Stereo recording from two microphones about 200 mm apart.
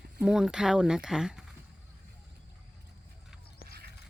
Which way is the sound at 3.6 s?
50° left (ahead or behind).